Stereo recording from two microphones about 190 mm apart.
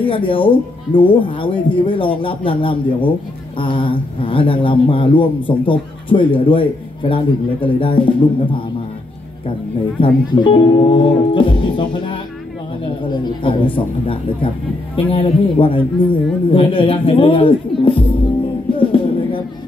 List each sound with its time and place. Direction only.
0.0 s a man's voice: 25° left (ahead or behind)
9.9 s a man's voice: 25° left (ahead or behind)
18.8 s a sound: 25° left (ahead or behind)